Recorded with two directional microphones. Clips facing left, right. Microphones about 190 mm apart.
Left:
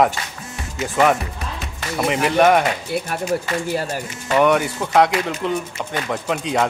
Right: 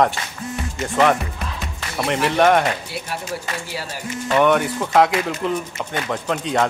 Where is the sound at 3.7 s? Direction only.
50° left (ahead or behind).